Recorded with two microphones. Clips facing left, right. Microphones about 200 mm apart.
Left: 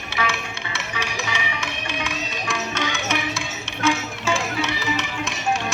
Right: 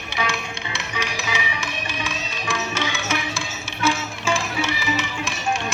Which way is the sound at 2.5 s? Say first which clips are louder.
Right 1 dB; 5° right (ahead or behind).